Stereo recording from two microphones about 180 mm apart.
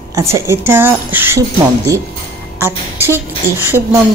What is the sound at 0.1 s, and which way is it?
A woman's voice, 15° right (ahead or behind).